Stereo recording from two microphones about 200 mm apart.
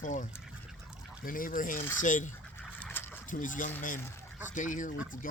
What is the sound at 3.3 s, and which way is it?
Speech, 40° left (ahead or behind).